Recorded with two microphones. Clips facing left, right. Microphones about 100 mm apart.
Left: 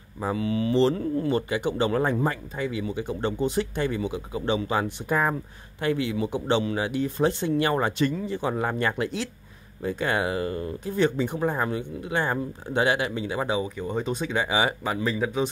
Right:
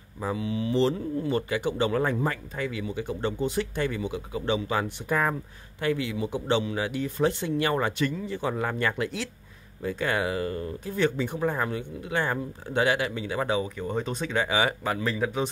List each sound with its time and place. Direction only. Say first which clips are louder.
0.4 s speech: left 5 dB; 90° left
1.3 s speech: left 2 dB; 25° left (ahead or behind)
13.3 s speech: even; 15° left (ahead or behind)
15.0 s speech: left 3 dB; 5° left (ahead or behind)